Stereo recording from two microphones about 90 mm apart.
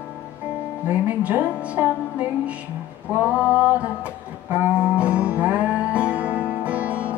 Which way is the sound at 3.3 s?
15° right (ahead or behind).